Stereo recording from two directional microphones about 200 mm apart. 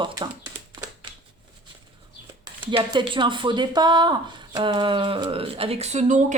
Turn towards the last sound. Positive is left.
turn(degrees=-40)  # may be behind; listen again after turning